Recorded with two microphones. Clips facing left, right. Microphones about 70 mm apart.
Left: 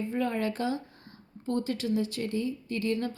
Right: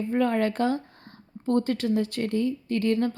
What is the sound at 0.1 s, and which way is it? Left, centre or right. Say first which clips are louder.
Speech: right 8 dB; right.